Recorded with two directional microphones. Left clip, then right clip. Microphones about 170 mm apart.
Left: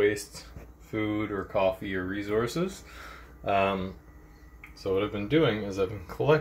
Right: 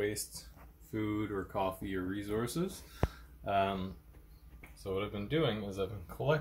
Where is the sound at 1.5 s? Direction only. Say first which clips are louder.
Left 12 dB; centre (ahead or behind).